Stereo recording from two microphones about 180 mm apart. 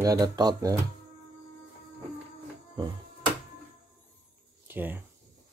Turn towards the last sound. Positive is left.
turn(degrees=-10)  # may be behind; listen again after turning